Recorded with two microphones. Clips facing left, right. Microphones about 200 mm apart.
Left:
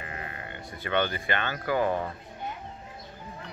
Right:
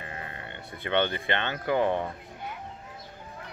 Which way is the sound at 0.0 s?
30° right (ahead or behind).